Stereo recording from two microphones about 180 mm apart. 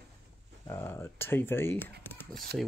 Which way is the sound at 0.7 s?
15° left (ahead or behind).